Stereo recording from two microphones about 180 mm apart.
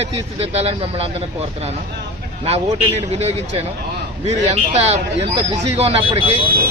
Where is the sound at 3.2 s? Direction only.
35° right (ahead or behind).